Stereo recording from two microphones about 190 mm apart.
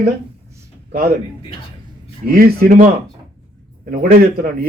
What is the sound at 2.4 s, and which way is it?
Speech, 50° right (ahead or behind).